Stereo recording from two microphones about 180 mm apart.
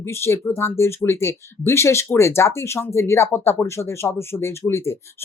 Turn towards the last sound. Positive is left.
turn(degrees=15)  # may be behind; listen again after turning